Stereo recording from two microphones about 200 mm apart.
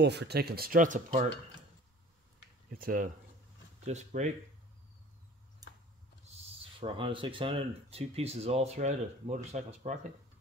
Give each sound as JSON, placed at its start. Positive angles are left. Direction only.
{"t": 0.0, "sound": "speech", "side_deg": -60}
{"t": 2.8, "sound": "speech", "side_deg": -45}
{"t": 6.3, "sound": "speech", "side_deg": -25}